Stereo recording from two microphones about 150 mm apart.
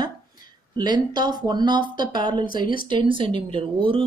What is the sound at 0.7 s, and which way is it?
Speech, 30° right (ahead or behind).